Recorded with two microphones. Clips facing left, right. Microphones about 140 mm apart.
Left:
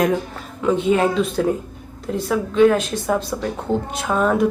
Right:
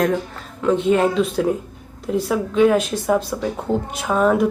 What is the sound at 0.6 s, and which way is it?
A woman's voice, 5° left (ahead or behind).